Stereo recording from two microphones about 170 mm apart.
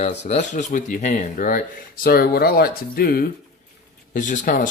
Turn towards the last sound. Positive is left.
turn(degrees=50)  # may be behind; listen again after turning